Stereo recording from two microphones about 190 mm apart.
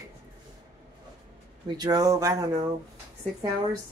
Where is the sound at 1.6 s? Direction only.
20° right (ahead or behind).